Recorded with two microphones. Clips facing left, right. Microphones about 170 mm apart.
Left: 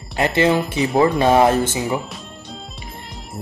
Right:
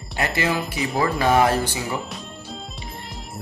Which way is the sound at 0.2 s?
25° left (ahead or behind).